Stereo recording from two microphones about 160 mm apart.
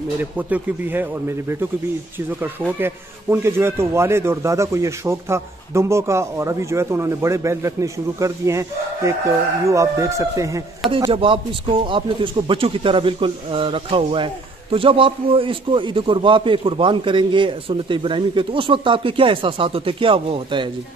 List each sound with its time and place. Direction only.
0.2 s a man's voice: 10° right (ahead or behind)
2.8 s a man's voice: 15° right (ahead or behind)
10.9 s speech: 35° right (ahead or behind)